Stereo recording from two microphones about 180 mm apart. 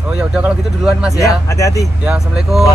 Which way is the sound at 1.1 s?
15° left (ahead or behind).